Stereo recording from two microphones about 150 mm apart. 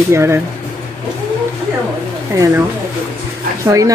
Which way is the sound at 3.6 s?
20° right (ahead or behind).